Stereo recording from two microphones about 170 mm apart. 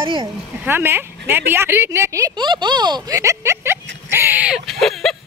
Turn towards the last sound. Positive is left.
turn(degrees=0)  # may be behind; listen again after turning